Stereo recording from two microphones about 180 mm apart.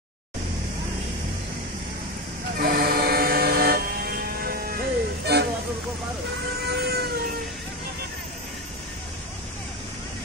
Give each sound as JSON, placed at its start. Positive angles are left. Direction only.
{"t": 2.6, "sound": "vehicle", "side_deg": -55}
{"t": 6.6, "sound": "cat", "side_deg": -65}